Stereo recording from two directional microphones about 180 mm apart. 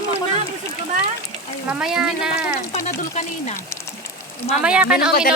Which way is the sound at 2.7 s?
40° left (ahead or behind).